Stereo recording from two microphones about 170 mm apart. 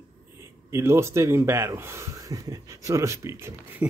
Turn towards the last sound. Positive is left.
turn(degrees=-15)  # may be behind; listen again after turning